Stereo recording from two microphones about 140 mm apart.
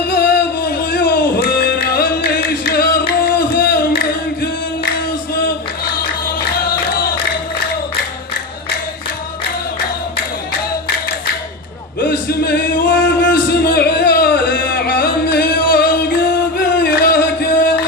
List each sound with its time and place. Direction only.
0.2 s music: 90° left
4.9 s singing: 90° left
6.0 s music: 90° left
11.9 s music: 90° left